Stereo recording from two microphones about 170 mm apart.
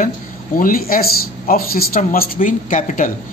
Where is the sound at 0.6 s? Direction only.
55° left (ahead or behind).